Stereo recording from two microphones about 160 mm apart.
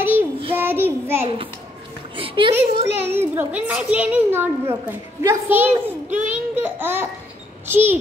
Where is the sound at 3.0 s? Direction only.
15° right (ahead or behind).